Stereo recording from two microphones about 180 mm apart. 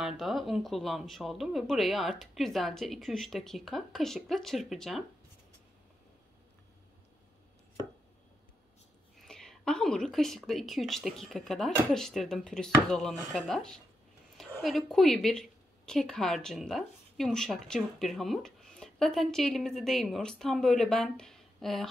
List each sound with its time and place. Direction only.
0.0 s speech: centre (ahead or behind)
9.2 s a woman's voice: 5° left (ahead or behind)